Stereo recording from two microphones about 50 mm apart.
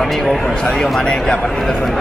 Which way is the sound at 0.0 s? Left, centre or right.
Centre.